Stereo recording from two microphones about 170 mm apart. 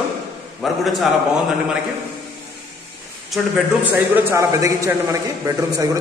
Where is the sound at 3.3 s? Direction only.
10° right (ahead or behind).